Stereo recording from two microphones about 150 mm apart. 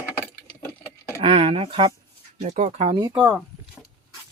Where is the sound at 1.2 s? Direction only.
35° right (ahead or behind).